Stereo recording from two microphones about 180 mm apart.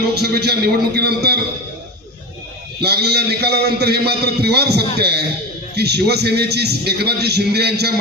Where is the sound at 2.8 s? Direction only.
65° right (ahead or behind).